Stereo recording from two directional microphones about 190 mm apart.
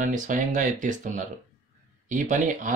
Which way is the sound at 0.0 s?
40° right (ahead or behind).